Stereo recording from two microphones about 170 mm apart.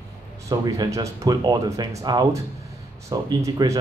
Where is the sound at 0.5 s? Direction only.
20° right (ahead or behind).